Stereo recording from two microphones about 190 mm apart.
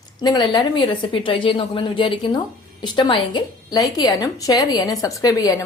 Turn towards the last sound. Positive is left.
turn(degrees=20)  # may be behind; listen again after turning